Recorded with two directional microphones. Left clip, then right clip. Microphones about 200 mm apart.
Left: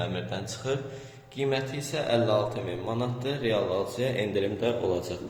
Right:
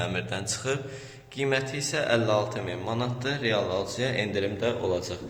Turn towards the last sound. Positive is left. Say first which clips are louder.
# even
turn(degrees=15)  # may be behind; listen again after turning